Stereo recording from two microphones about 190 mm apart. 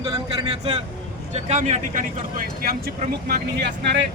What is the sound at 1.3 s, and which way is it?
Speech, 40° right (ahead or behind).